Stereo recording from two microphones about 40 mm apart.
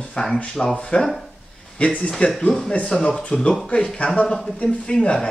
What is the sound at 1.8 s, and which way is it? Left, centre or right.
Speech, left.